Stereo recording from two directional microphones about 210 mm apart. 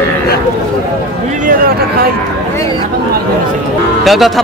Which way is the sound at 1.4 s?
45° right (ahead or behind).